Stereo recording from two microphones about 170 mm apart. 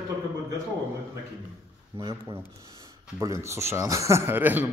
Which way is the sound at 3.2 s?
15° right (ahead or behind).